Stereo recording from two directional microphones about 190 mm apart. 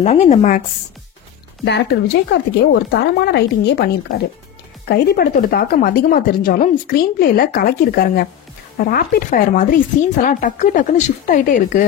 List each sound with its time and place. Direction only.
0.0 s a woman's voice: 35° left (ahead or behind)
1.6 s speech: 65° left (ahead or behind); by 11.8 s 45° left (ahead or behind)